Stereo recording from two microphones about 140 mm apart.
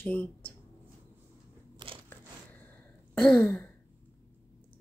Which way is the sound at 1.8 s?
35° right (ahead or behind).